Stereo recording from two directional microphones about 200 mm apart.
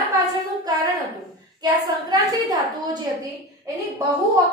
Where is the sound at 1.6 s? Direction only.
20° right (ahead or behind).